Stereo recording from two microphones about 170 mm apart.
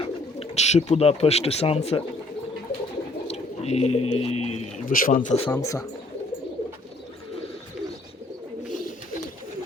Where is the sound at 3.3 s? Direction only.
40° left (ahead or behind).